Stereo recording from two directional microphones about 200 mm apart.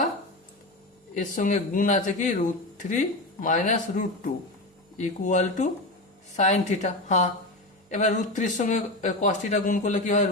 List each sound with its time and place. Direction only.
1.1 s speech: 40° left (ahead or behind)